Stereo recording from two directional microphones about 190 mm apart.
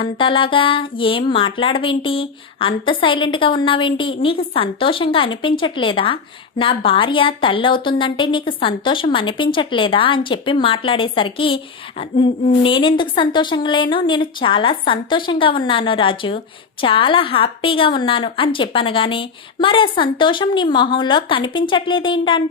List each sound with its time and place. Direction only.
0.0 s a woman's voice: 25° left (ahead or behind)